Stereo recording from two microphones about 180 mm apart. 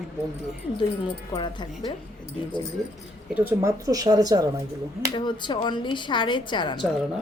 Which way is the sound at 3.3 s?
10° right (ahead or behind).